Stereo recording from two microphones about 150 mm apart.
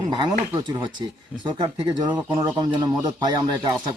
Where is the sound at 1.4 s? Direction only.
30° right (ahead or behind).